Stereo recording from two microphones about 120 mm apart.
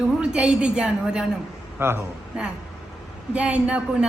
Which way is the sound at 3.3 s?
10° right (ahead or behind).